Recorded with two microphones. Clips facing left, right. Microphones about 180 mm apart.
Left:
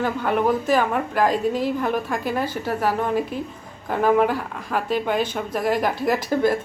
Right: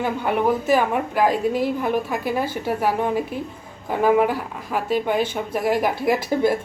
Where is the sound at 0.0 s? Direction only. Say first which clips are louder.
Even; 15° right (ahead or behind).